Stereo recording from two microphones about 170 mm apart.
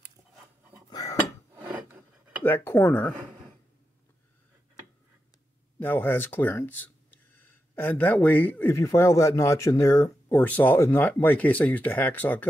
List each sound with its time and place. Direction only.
0.8 s dishes: 20° left (ahead or behind)
1.5 s filing: 10° right (ahead or behind)
2.4 s speech: 10° left (ahead or behind)
5.8 s speech: 10° left (ahead or behind)